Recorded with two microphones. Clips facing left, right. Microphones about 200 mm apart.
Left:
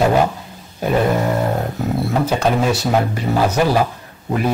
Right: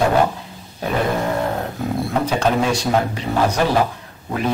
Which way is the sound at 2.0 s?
5° left (ahead or behind).